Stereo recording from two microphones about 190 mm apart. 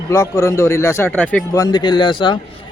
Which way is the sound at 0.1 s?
15° left (ahead or behind).